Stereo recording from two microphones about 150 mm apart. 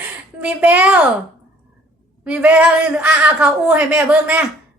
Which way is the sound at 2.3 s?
10° right (ahead or behind).